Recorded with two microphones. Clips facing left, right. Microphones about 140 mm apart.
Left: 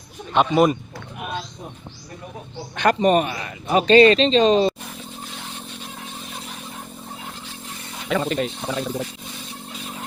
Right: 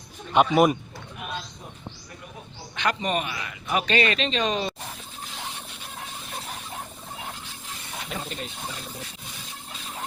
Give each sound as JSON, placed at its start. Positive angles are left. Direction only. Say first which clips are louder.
{"t": 0.3, "sound": "a man's voice", "louder": "left 2 dB", "side_deg": -10}
{"t": 2.7, "sound": "a man's voice", "louder": "left 9 dB", "side_deg": 45}
{"t": 8.1, "sound": "speech", "louder": "left 14 dB", "side_deg": 90}